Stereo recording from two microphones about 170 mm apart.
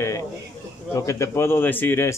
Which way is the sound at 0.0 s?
20° left (ahead or behind).